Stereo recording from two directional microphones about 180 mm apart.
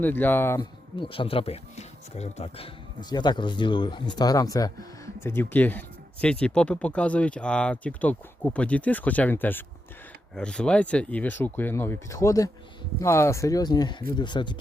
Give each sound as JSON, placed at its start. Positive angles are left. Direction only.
{"t": 0.0, "sound": "speech", "side_deg": 10}
{"t": 0.6, "sound": "speech", "side_deg": 30}